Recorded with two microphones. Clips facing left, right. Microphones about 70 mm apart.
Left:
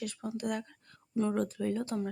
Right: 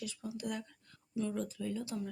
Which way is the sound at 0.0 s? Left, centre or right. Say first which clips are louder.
Left 5 dB; left.